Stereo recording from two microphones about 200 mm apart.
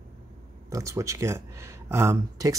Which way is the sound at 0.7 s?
15° right (ahead or behind).